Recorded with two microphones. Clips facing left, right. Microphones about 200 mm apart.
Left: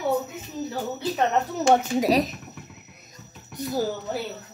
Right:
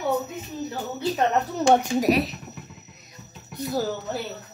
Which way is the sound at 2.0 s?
35° left (ahead or behind).